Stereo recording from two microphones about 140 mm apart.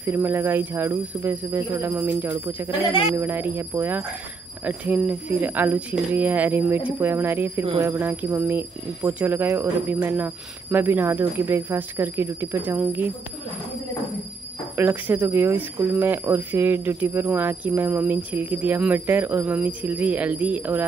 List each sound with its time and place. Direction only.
0.0 s speech: 15° right (ahead or behind)
14.8 s speech: 15° right (ahead or behind)